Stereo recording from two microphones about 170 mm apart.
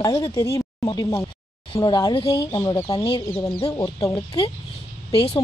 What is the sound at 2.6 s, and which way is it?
Speech, 10° left (ahead or behind).